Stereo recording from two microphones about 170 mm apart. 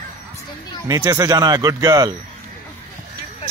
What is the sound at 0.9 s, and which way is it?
Speech, 25° right (ahead or behind).